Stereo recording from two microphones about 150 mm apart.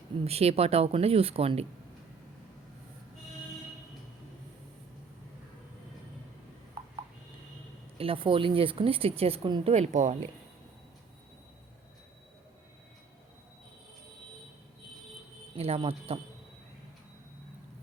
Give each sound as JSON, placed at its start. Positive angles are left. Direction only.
{"t": 0.3, "sound": "speech", "side_deg": -40}
{"t": 6.8, "sound": "a sound", "side_deg": -30}
{"t": 7.9, "sound": "speech", "side_deg": -35}
{"t": 9.7, "sound": "speech", "side_deg": -50}
{"t": 15.5, "sound": "speech", "side_deg": -40}